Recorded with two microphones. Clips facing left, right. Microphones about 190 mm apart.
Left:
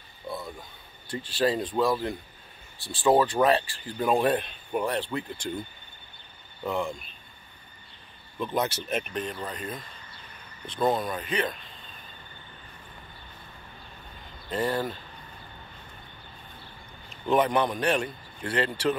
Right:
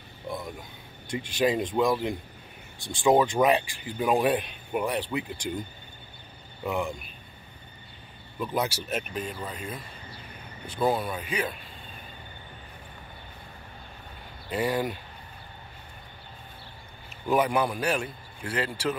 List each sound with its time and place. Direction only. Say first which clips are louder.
0.3 s a sound: right 1 dB; 15° right (ahead or behind)
1.1 s speech: right 1 dB; 15° right (ahead or behind)
8.4 s a man's voice: left 1 dB; 10° right (ahead or behind)
14.5 s speech: right 1 dB; 10° right (ahead or behind)
17.1 s a man's voice: left 1 dB; 5° right (ahead or behind)